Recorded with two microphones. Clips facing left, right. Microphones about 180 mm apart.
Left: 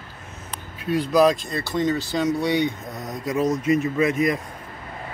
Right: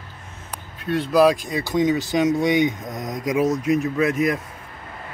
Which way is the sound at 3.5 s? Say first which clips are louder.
Even; centre (ahead or behind).